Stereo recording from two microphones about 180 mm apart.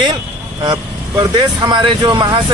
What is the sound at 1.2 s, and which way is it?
A man's voice, 20° right (ahead or behind).